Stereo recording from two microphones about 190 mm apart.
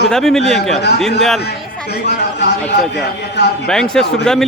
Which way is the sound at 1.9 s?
60° left (ahead or behind).